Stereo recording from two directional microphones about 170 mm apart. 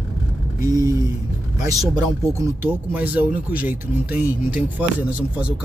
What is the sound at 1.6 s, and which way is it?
Speech, 20° right (ahead or behind).